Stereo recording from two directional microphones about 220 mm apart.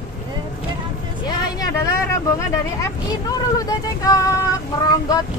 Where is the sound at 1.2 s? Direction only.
15° left (ahead or behind).